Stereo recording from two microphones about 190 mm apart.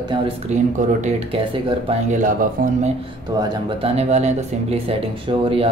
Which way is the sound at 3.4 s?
25° right (ahead or behind).